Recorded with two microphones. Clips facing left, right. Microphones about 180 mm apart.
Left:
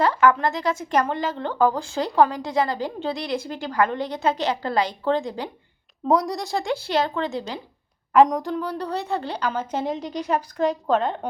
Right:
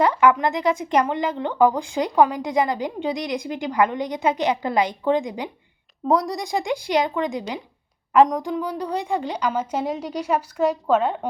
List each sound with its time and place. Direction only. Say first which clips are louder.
0.0 s speech: right 1 dB; 15° right (ahead or behind)
6.1 s a woman's voice: even; centre (ahead or behind)
6.4 s speech: right 1 dB; 15° right (ahead or behind)
8.1 s a woman's voice: even; centre (ahead or behind)
8.4 s speech: right 1 dB; 15° right (ahead or behind)